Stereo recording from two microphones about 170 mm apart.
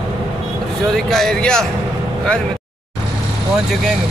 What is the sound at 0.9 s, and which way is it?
Speech, centre (ahead or behind).